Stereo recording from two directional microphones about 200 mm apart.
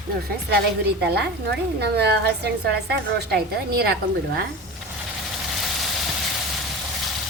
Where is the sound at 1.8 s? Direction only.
55° right (ahead or behind).